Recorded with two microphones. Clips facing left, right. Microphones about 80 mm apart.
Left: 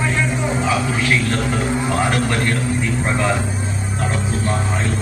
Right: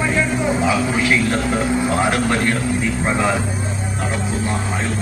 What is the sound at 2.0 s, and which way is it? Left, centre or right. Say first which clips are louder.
Speech: right 1 dB; centre.